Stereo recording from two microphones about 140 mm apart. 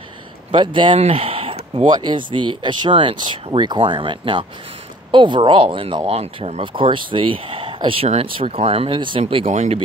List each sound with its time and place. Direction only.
0.5 s speech: 35° right (ahead or behind)
9.5 s speech: 55° right (ahead or behind)